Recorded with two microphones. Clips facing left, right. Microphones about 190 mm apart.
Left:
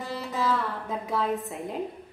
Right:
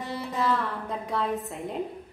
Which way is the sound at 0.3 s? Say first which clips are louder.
Even; centre (ahead or behind).